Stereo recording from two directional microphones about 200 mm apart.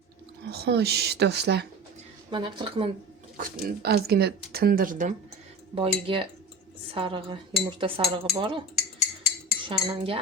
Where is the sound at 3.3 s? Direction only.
50° right (ahead or behind).